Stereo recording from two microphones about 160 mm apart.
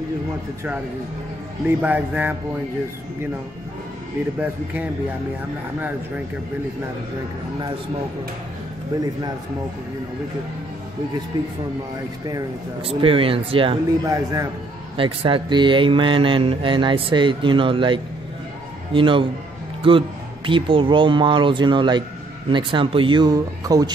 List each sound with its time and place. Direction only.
1.8 s speech: 10° right (ahead or behind)
11.3 s speech: 25° right (ahead or behind)
12.8 s speech: 35° right (ahead or behind)
14.0 s speech: 20° right (ahead or behind)
15.0 s speech: 35° right (ahead or behind)